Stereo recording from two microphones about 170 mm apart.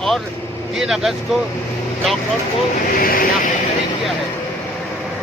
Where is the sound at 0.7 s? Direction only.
Centre (ahead or behind).